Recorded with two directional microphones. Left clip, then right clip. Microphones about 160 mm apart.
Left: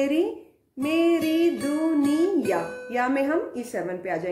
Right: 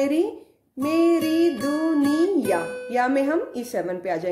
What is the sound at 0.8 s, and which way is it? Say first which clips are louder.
Speech: right 2 dB; 25° right (ahead or behind).